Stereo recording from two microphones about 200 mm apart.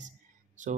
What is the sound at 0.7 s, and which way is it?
Speech, 40° right (ahead or behind).